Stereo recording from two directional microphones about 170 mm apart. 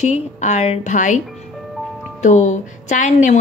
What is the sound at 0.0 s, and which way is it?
Speech, 45° left (ahead or behind).